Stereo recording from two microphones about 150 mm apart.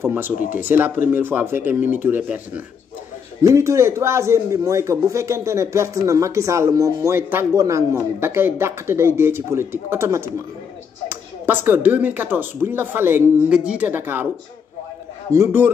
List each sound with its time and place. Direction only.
0.0 s a man's voice: 15° right (ahead or behind)
15.3 s speech: 15° right (ahead or behind)